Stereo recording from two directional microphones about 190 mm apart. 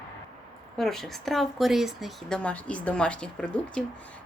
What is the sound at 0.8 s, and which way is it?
A woman's voice, centre (ahead or behind).